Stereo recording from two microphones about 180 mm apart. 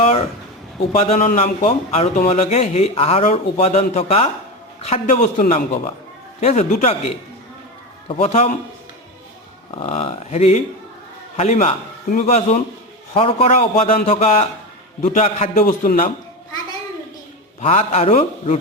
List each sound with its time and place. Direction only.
0.0 s a sound: 35° left (ahead or behind)
1.1 s a man's voice: 50° left (ahead or behind)
1.4 s a man's voice: 35° left (ahead or behind)
9.7 s a man's voice: 30° left (ahead or behind); by 16.1 s 50° left (ahead or behind)
17.6 s a man's voice: 40° left (ahead or behind)